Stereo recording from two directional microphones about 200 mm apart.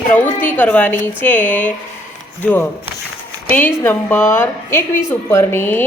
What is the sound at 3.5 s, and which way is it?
A woman's voice, 10° left (ahead or behind).